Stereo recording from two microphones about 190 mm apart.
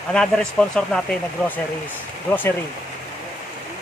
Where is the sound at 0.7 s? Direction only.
5° left (ahead or behind).